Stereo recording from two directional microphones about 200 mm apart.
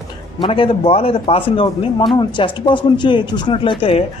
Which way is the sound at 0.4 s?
25° left (ahead or behind).